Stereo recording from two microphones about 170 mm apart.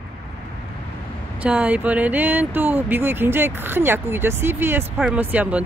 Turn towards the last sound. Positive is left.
turn(degrees=-10)  # may be behind; listen again after turning